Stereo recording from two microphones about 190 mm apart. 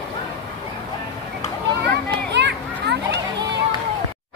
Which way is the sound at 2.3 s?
65° right (ahead or behind).